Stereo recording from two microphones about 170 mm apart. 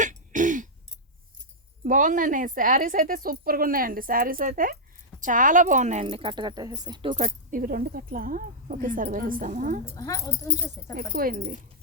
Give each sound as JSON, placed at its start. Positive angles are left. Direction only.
{"t": 0.0, "sound": "throat clearing", "side_deg": -50}
{"t": 1.8, "sound": "a woman's voice", "side_deg": -50}
{"t": 7.3, "sound": "speech", "side_deg": -55}
{"t": 9.9, "sound": "speech", "side_deg": 20}
{"t": 10.9, "sound": "a woman's voice", "side_deg": -60}